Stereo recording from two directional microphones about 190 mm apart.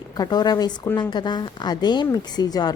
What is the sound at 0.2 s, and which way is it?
A woman's voice, 20° left (ahead or behind).